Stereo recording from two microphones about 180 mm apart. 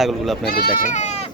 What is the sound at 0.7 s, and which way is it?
Speech, 45° left (ahead or behind).